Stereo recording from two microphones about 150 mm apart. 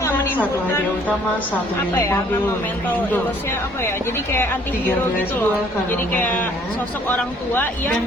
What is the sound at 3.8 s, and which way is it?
A woman's voice, 15° left (ahead or behind).